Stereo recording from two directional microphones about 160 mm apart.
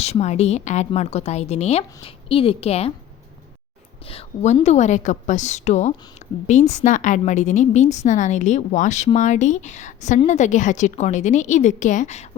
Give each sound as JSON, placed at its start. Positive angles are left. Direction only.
{"t": 0.0, "sound": "a woman's voice", "side_deg": 40}
{"t": 4.1, "sound": "a woman's voice", "side_deg": 35}